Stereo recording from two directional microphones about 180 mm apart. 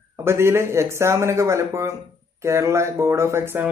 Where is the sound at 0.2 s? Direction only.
15° right (ahead or behind).